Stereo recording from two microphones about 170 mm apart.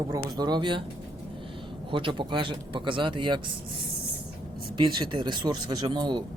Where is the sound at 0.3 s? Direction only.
25° right (ahead or behind).